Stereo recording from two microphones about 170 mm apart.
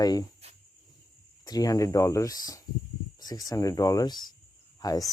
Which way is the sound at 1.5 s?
20° left (ahead or behind).